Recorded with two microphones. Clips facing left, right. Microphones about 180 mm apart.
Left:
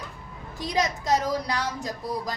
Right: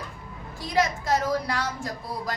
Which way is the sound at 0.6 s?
20° left (ahead or behind).